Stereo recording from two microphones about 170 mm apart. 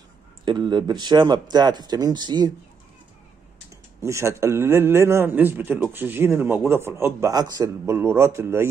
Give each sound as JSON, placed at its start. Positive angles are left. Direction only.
{"t": 0.5, "sound": "speech", "side_deg": -25}
{"t": 4.0, "sound": "a man's voice", "side_deg": -15}